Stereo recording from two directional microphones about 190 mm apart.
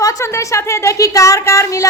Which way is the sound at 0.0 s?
15° left (ahead or behind).